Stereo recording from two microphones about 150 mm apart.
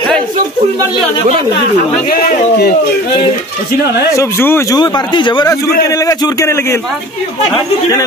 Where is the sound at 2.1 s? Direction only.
90° left.